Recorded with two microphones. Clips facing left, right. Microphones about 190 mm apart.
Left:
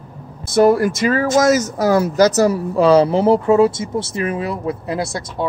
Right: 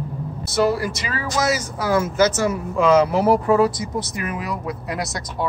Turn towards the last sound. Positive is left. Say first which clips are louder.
# left 5 dB
turn(degrees=25)  # may be behind; listen again after turning